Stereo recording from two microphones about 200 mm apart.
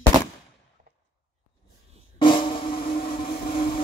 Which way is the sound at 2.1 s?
25° left (ahead or behind).